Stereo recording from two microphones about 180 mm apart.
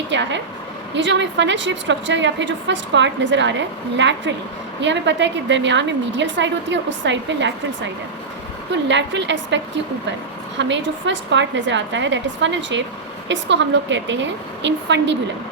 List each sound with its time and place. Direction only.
0.1 s a woman's voice: 80° right
8.7 s a woman's voice: 80° right
10.6 s a woman's voice: 85° right